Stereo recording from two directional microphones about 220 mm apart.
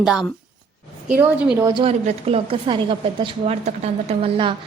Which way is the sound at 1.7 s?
25° right (ahead or behind).